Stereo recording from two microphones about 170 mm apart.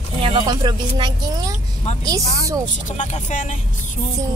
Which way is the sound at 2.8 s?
45° left (ahead or behind).